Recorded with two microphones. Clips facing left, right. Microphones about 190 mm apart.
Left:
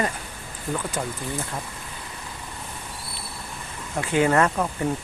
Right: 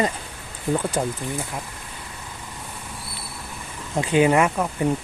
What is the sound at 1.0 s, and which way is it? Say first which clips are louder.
Speech: right 5 dB; 35° right (ahead or behind).